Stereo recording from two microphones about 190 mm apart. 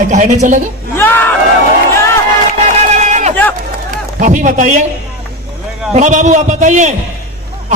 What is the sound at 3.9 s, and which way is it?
A man's voice, 40° right (ahead or behind).